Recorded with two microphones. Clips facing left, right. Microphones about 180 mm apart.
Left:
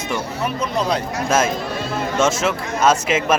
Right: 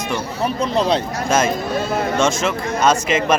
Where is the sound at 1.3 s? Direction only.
5° left (ahead or behind).